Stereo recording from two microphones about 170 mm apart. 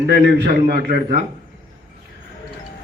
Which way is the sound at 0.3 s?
70° right (ahead or behind).